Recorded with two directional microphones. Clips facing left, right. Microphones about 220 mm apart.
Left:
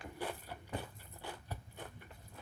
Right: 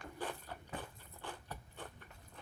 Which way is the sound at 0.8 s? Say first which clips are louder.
Left 1 dB; 10° left (ahead or behind).